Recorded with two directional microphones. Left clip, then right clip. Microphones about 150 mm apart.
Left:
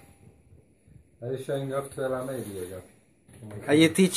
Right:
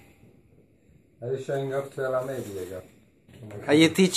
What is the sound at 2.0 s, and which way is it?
Speech, 65° left (ahead or behind).